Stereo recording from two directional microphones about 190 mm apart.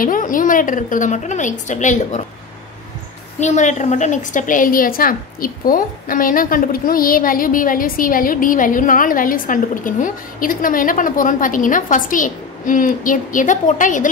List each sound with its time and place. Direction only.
0.0 s a woman's voice: 45° left (ahead or behind)
3.3 s a woman's voice: 40° left (ahead or behind)